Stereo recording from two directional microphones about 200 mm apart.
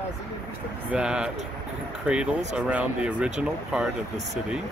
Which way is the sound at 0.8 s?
5° right (ahead or behind).